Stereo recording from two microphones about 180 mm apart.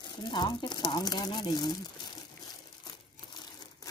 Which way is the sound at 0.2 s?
25° left (ahead or behind).